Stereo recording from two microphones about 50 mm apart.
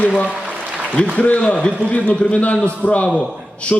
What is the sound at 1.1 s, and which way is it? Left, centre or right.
A man's voice, left.